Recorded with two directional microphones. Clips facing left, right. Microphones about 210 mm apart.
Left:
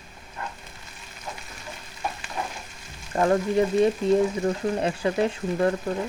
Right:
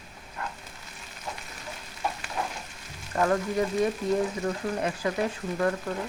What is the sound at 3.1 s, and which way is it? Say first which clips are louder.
Speech: left 4 dB; 25° left (ahead or behind).